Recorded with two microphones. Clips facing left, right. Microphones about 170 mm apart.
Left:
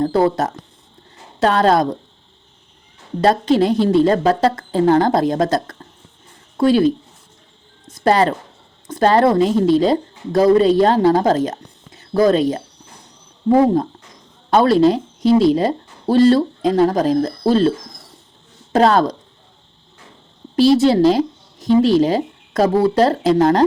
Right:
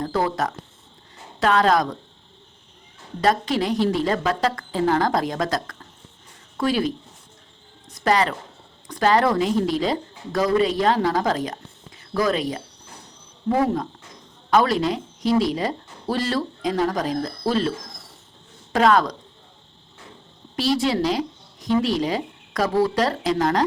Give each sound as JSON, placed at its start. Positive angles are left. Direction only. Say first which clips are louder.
{"t": 0.0, "sound": "a woman's voice", "louder": "left 7 dB", "side_deg": 30}
{"t": 3.2, "sound": "a woman's voice", "louder": "left 7 dB", "side_deg": 30}
{"t": 13.5, "sound": "a woman's voice", "louder": "left 8 dB", "side_deg": 25}
{"t": 20.6, "sound": "speech", "louder": "left 9 dB", "side_deg": 30}